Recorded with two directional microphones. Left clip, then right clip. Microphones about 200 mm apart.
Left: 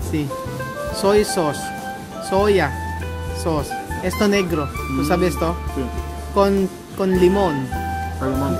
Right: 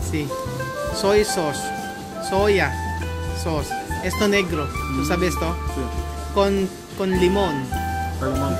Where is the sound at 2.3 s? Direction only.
20° left (ahead or behind).